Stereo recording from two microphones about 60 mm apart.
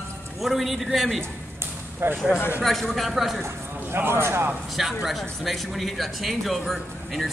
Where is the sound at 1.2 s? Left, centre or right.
Right.